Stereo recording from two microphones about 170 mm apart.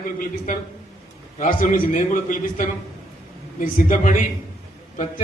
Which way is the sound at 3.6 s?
50° left (ahead or behind).